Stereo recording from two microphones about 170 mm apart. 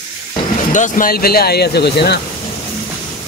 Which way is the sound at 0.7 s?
50° left (ahead or behind).